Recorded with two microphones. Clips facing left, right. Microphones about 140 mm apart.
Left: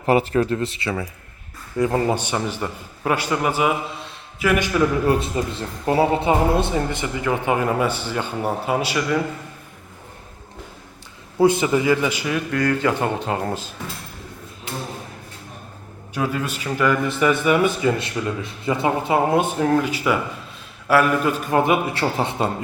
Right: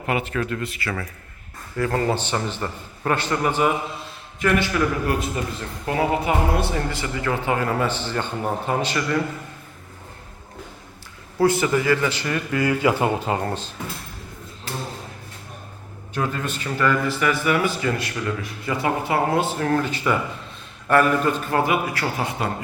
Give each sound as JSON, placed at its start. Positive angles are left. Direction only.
{"t": 0.0, "sound": "a man's voice", "side_deg": 35}
{"t": 5.0, "sound": "a man's voice", "side_deg": 25}
{"t": 11.3, "sound": "speech", "side_deg": 20}
{"t": 16.1, "sound": "a man's voice", "side_deg": 10}